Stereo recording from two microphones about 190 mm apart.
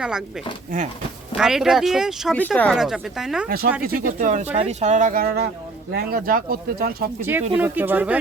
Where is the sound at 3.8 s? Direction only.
50° right (ahead or behind).